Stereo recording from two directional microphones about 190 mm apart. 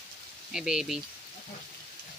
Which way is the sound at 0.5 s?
5° right (ahead or behind).